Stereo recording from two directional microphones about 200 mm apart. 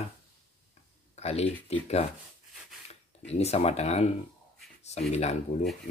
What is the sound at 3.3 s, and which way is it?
Speech, 30° left (ahead or behind).